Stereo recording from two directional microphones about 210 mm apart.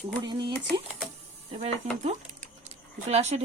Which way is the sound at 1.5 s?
30° right (ahead or behind).